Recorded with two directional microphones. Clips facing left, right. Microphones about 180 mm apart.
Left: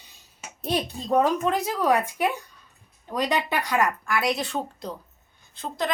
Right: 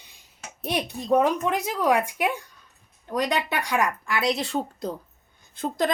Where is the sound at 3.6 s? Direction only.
10° right (ahead or behind).